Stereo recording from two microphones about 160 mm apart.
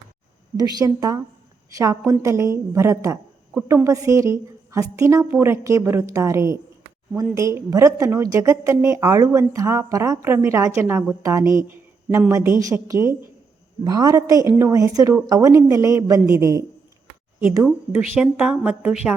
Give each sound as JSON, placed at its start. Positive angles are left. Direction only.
{"t": 0.6, "sound": "a woman's voice", "side_deg": -25}
{"t": 3.8, "sound": "a woman's voice", "side_deg": -20}